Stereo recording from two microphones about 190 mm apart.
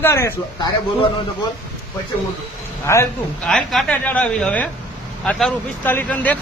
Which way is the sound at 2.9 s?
15° left (ahead or behind).